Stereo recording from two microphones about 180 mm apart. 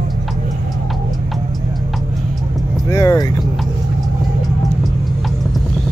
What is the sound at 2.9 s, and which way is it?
Vehicle, 15° left (ahead or behind).